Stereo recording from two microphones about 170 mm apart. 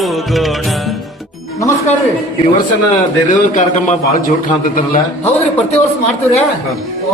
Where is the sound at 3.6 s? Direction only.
45° left (ahead or behind).